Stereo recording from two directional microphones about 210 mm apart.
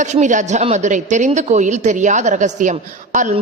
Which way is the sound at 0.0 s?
35° right (ahead or behind).